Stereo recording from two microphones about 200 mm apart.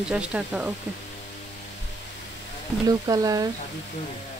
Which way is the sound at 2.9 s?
20° right (ahead or behind).